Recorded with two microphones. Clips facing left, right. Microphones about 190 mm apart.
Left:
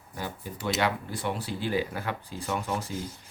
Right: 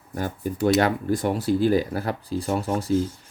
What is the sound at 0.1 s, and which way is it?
Speech, 50° right (ahead or behind).